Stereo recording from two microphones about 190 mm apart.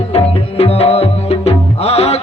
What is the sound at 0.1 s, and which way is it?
Music, 30° left (ahead or behind).